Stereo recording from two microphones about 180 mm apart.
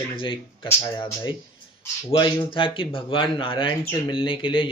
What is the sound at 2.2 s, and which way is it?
Speech, 30° left (ahead or behind).